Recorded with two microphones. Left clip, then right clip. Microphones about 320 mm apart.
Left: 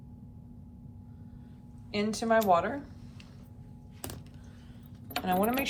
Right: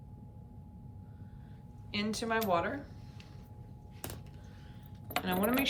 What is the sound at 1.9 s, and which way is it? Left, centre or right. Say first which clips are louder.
Speech: left 6 dB; centre.